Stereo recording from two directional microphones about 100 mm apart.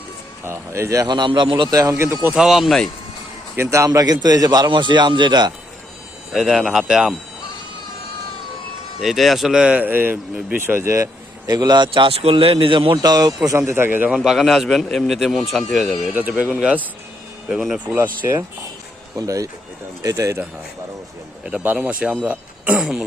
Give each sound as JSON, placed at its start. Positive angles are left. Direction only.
{"t": 0.4, "sound": "speech", "side_deg": -30}
{"t": 1.0, "sound": "a man's voice", "side_deg": -50}
{"t": 1.7, "sound": "speech", "side_deg": -35}
{"t": 2.3, "sound": "a man's voice", "side_deg": -5}
{"t": 3.5, "sound": "a man's voice", "side_deg": -25}
{"t": 6.3, "sound": "a man's voice", "side_deg": -5}
{"t": 9.0, "sound": "speech", "side_deg": 0}
{"t": 10.8, "sound": "speech", "side_deg": -30}
{"t": 12.1, "sound": "speech", "side_deg": -75}
{"t": 13.0, "sound": "speech", "side_deg": -40}
{"t": 14.1, "sound": "a man's voice", "side_deg": -5}
{"t": 17.9, "sound": "speech", "side_deg": -25}
{"t": 19.1, "sound": "speech", "side_deg": -35}
{"t": 21.4, "sound": "speech", "side_deg": -15}